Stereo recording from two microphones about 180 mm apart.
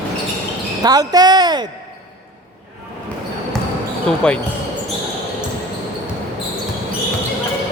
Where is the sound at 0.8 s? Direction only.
20° right (ahead or behind).